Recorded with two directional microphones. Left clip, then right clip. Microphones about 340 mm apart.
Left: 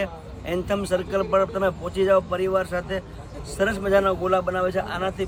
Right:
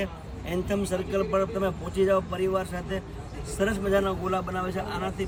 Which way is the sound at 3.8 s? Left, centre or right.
Centre.